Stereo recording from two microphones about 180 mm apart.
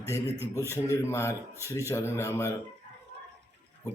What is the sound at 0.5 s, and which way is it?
Speech, 15° left (ahead or behind).